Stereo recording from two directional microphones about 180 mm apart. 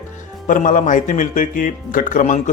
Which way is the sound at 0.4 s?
45° left (ahead or behind).